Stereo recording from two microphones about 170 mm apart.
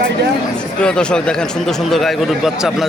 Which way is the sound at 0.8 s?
5° left (ahead or behind).